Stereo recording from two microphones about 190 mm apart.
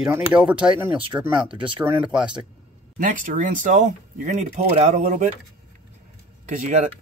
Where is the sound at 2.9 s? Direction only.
45° right (ahead or behind).